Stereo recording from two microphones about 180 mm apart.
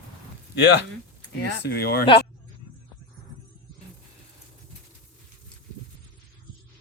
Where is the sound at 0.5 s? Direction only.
70° left (ahead or behind).